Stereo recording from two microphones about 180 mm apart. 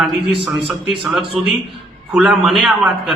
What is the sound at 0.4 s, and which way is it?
A man's voice, centre (ahead or behind).